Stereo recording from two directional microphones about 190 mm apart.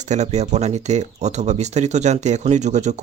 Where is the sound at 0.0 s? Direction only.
35° right (ahead or behind).